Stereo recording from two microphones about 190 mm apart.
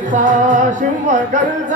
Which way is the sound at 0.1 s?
40° right (ahead or behind).